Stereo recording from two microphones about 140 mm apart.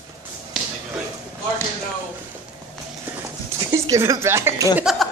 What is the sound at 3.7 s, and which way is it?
Speech, 25° right (ahead or behind).